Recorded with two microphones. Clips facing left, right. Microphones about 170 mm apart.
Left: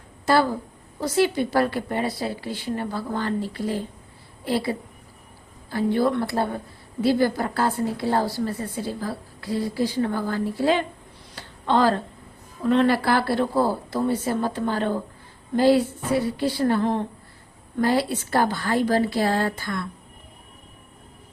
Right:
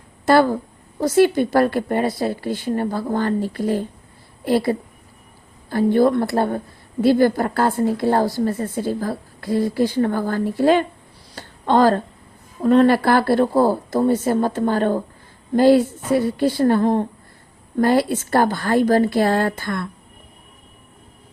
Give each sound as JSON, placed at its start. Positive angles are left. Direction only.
{"t": 0.3, "sound": "a woman's voice", "side_deg": -55}
{"t": 5.7, "sound": "a woman's voice", "side_deg": -50}